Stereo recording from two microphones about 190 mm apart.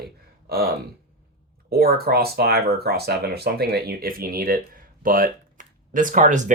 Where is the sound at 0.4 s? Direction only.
55° right (ahead or behind).